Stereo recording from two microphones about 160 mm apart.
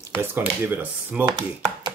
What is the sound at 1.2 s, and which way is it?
Speech, 30° right (ahead or behind).